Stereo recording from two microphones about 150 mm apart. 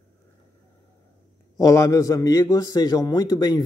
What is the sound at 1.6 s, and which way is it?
A man's voice, 20° left (ahead or behind).